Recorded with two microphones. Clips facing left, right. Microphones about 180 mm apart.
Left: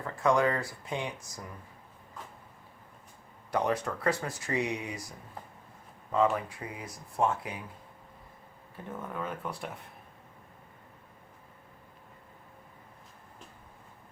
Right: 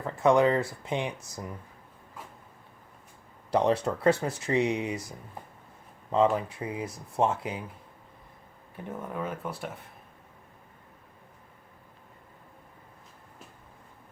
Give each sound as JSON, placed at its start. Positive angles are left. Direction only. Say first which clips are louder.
{"t": 0.0, "sound": "speech", "louder": "right 4 dB", "side_deg": -20}
{"t": 3.5, "sound": "speech", "louder": "right 5 dB", "side_deg": -30}
{"t": 6.1, "sound": "speech", "louder": "right 3 dB", "side_deg": -25}
{"t": 9.0, "sound": "speech", "louder": "right 2 dB", "side_deg": -10}